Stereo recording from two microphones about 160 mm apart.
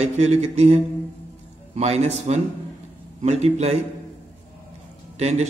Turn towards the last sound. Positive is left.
turn(degrees=-45)  # may be behind; listen again after turning